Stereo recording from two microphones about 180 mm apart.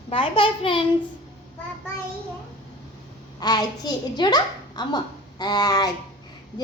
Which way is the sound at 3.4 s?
20° left (ahead or behind).